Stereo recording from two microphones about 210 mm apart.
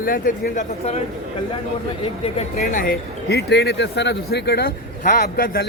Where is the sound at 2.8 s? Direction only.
45° left (ahead or behind).